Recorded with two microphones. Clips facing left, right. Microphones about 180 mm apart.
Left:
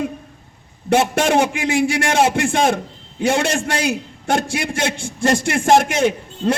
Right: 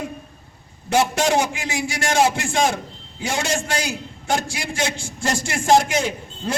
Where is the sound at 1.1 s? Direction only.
55° left (ahead or behind).